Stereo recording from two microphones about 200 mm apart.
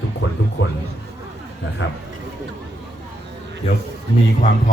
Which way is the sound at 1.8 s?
65° left (ahead or behind).